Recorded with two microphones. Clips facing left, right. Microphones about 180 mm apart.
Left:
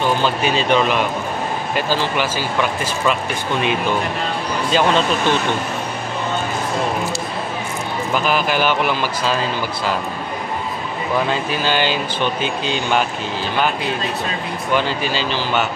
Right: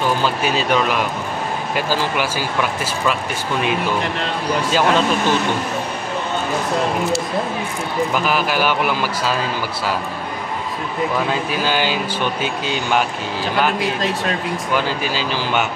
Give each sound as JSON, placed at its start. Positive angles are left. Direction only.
{"t": 0.2, "sound": "speech", "side_deg": -5}
{"t": 4.6, "sound": "speech", "side_deg": -5}
{"t": 8.3, "sound": "speech", "side_deg": -5}
{"t": 11.6, "sound": "speech", "side_deg": -10}
{"t": 13.7, "sound": "speech", "side_deg": -80}
{"t": 14.8, "sound": "speech", "side_deg": -10}